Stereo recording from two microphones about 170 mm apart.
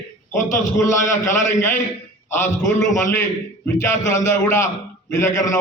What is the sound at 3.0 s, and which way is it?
A man's voice, 15° left (ahead or behind).